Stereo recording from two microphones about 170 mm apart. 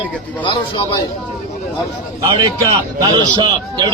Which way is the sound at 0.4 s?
30° left (ahead or behind).